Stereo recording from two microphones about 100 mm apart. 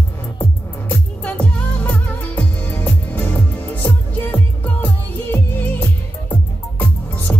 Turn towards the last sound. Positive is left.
turn(degrees=15)  # may be behind; listen again after turning